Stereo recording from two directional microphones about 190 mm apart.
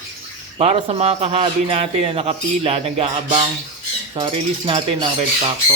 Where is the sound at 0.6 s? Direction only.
35° right (ahead or behind).